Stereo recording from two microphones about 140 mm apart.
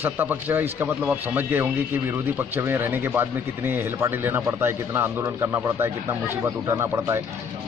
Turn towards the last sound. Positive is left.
turn(degrees=-20)  # may be behind; listen again after turning